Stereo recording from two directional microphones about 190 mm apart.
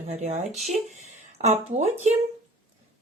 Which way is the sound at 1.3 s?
35° right (ahead or behind).